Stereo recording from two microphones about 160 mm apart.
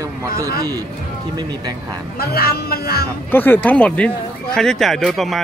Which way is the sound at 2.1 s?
70° left (ahead or behind).